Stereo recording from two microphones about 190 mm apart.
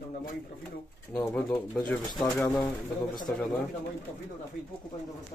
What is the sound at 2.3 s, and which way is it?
Speech, 10° left (ahead or behind).